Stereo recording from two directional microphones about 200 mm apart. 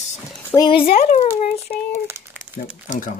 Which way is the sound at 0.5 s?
25° left (ahead or behind).